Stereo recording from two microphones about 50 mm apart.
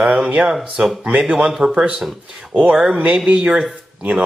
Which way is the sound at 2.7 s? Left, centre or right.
Centre.